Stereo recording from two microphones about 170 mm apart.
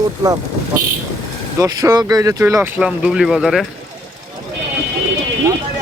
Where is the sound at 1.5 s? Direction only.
20° right (ahead or behind); by 3.7 s centre (ahead or behind).